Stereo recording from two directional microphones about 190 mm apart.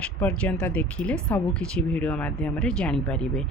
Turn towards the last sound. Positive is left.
turn(degrees=5)  # may be behind; listen again after turning